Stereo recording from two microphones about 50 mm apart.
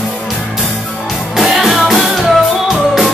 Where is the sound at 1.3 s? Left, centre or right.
Centre.